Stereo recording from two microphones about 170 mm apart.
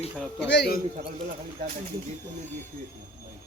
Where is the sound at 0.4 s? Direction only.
80° left.